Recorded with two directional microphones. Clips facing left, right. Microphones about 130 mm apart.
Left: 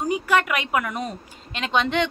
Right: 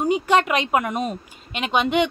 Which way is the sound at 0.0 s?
25° right (ahead or behind).